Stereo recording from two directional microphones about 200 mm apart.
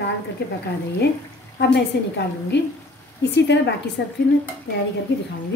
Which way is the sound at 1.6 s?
60° left (ahead or behind).